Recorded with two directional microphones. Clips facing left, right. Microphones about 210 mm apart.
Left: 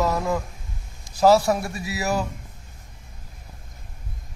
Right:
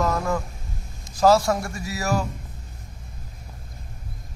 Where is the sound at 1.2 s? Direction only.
5° left (ahead or behind).